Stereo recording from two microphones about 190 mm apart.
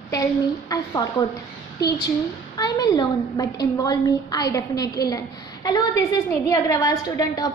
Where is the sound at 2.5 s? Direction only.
20° left (ahead or behind).